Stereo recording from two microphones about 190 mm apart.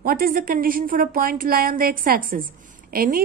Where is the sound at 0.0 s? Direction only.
50° right (ahead or behind).